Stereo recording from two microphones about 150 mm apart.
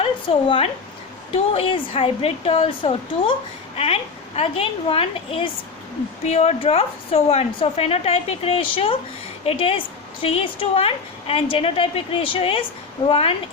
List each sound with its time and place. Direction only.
0.0 s a woman's voice: 35° left (ahead or behind)